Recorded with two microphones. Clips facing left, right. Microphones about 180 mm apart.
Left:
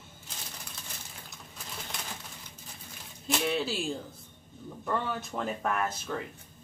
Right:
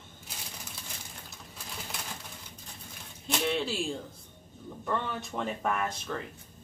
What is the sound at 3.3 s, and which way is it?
Speech, centre (ahead or behind).